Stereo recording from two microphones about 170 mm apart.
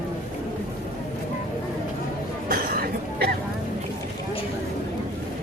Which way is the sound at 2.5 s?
60° right (ahead or behind).